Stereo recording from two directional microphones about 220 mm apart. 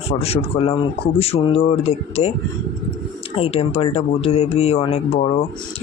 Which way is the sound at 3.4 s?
25° left (ahead or behind).